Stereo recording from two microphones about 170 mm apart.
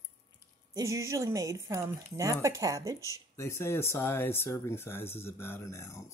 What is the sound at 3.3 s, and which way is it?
Speech, 15° left (ahead or behind).